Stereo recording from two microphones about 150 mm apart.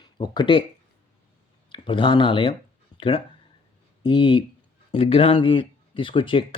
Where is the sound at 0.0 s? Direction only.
30° left (ahead or behind).